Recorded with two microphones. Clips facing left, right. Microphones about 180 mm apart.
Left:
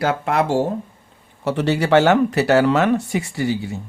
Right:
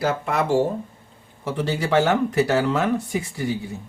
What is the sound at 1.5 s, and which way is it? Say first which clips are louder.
Speech: left 5 dB; 70° left (ahead or behind).